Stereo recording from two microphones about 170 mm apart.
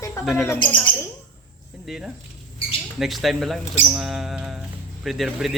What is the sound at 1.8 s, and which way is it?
Speech, centre (ahead or behind).